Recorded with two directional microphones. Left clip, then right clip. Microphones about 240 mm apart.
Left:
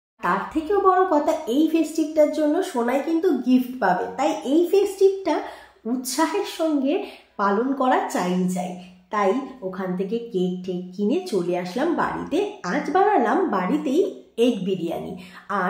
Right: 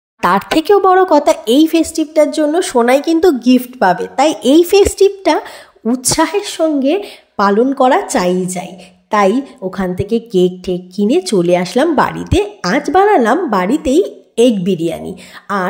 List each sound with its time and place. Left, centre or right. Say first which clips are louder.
0.2 s a woman's voice: right 11 dB; right